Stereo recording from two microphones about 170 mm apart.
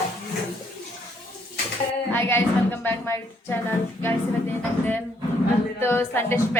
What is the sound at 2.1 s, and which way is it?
A woman's voice, 15° left (ahead or behind).